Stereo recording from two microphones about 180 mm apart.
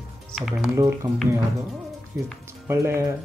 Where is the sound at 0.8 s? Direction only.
15° right (ahead or behind).